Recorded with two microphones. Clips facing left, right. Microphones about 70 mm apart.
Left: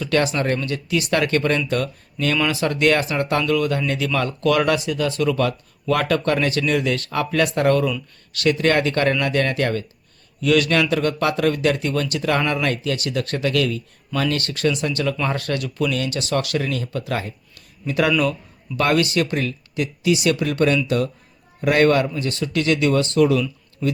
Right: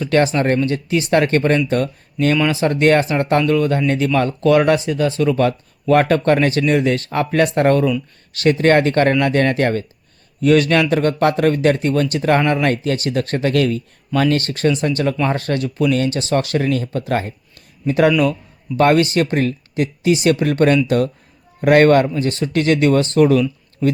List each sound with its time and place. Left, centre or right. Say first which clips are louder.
0.0 s speech: right 4 dB; right
18.8 s speech: right 5 dB; right